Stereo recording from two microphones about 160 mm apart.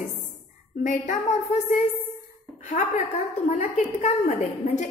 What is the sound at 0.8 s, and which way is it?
Speech, 50° left (ahead or behind).